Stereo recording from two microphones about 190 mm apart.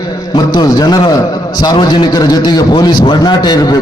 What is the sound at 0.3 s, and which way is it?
A man's voice, 20° left (ahead or behind).